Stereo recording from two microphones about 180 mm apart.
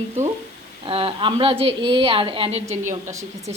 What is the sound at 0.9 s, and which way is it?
A woman's voice, 30° right (ahead or behind).